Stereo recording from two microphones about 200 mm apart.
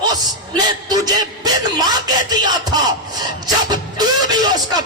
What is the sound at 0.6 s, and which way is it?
Speech, 20° right (ahead or behind).